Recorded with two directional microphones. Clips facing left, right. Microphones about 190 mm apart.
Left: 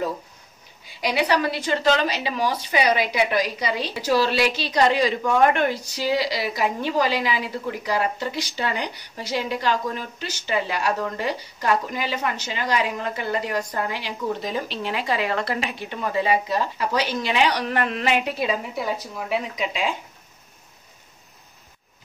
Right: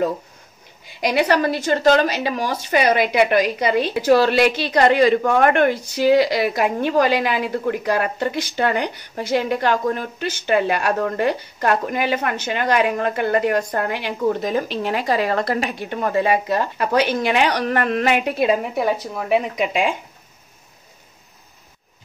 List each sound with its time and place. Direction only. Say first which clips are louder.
1.0 s a woman's voice: right 4 dB; 50° right (ahead or behind)